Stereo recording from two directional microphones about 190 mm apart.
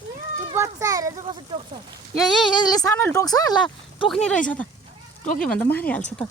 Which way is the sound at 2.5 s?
20° left (ahead or behind).